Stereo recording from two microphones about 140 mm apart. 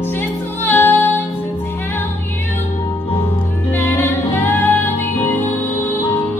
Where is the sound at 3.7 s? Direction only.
15° left (ahead or behind).